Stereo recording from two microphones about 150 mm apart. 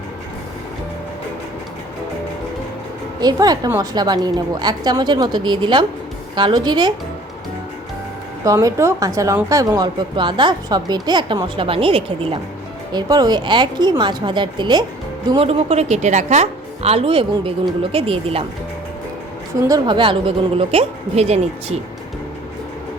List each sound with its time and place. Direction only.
3.2 s a woman's voice: 25° right (ahead or behind)
8.4 s a woman's voice: 20° right (ahead or behind); by 12.4 s 40° right (ahead or behind)
12.9 s a woman's voice: 30° right (ahead or behind)
19.5 s a woman's voice: 25° right (ahead or behind); by 21.8 s 45° right (ahead or behind)